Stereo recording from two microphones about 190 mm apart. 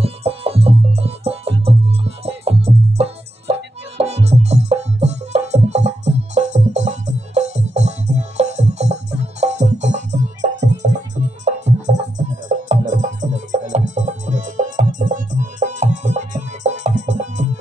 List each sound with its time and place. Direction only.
0.0 s music: 30° right (ahead or behind)
12.0 s music: 40° right (ahead or behind)